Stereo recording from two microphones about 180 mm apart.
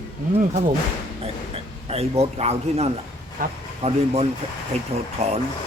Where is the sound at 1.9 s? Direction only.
35° right (ahead or behind).